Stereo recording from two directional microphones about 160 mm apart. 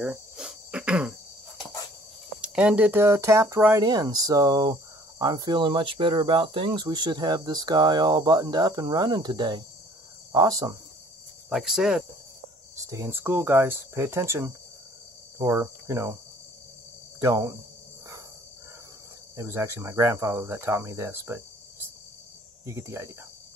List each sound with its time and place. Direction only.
0.0 s cricket: 5° right (ahead or behind)
2.4 s speech: 5° right (ahead or behind); by 10.8 s 25° right (ahead or behind)
11.4 s speech: 5° right (ahead or behind)
12.7 s speech: 20° right (ahead or behind)
15.3 s cricket: 20° right (ahead or behind)
17.2 s speech: 20° right (ahead or behind)
19.3 s speech: 20° right (ahead or behind)